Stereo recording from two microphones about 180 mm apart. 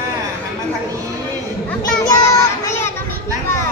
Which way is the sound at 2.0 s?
15° left (ahead or behind).